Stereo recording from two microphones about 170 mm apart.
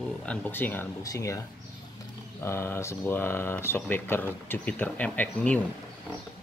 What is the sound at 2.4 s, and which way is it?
Speech, 15° left (ahead or behind).